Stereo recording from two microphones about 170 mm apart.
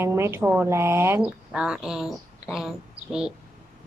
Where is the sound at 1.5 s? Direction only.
5° right (ahead or behind).